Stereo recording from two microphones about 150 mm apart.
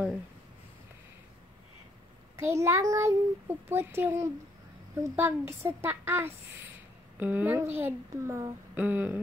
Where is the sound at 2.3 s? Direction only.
20° right (ahead or behind).